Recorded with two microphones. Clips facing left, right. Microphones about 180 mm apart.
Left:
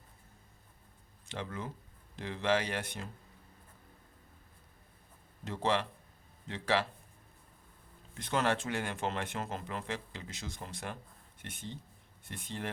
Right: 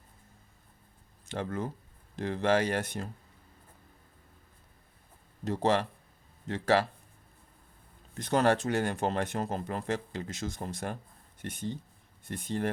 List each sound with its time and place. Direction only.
1.3 s speech: 45° right (ahead or behind)
5.5 s speech: 40° right (ahead or behind)
8.1 s speech: 40° right (ahead or behind)